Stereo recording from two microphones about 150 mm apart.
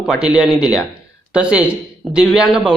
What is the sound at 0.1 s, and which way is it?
A man's voice, 5° right (ahead or behind).